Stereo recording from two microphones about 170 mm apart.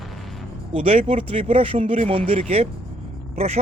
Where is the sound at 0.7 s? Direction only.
35° right (ahead or behind).